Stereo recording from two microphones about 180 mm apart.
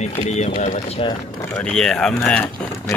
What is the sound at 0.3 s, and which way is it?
Speech, 40° left (ahead or behind).